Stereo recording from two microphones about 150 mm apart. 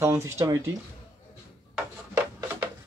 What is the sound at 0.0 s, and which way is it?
Speech, 20° right (ahead or behind).